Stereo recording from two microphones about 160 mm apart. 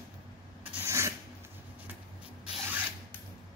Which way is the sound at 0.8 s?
15° right (ahead or behind).